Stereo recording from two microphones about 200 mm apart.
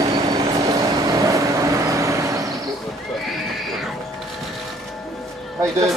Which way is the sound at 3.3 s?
Centre (ahead or behind).